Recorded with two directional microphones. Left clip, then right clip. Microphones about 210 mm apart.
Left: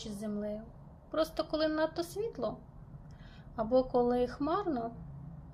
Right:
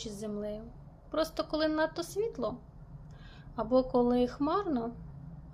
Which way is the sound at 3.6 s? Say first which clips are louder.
Right 1 dB; 10° right (ahead or behind).